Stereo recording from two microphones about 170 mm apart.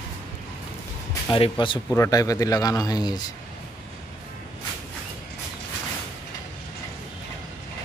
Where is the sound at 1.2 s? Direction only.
30° left (ahead or behind).